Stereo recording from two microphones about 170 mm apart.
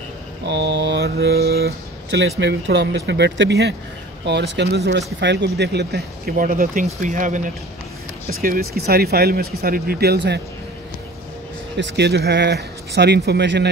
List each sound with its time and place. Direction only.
0.5 s speech: 90° right
11.7 s speech: 85° right